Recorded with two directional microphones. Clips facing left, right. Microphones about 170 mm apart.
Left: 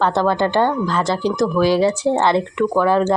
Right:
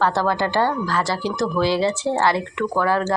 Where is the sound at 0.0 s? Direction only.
20° left (ahead or behind).